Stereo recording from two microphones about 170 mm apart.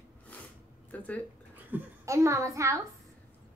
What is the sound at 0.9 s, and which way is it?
Speech, 10° left (ahead or behind).